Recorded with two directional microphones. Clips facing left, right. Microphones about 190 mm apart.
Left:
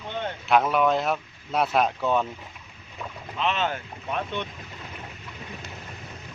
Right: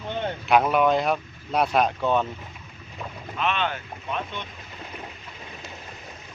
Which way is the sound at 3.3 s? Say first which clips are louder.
Even; 35° left (ahead or behind).